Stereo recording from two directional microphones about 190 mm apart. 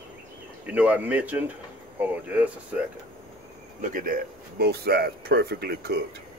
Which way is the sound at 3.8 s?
45° right (ahead or behind).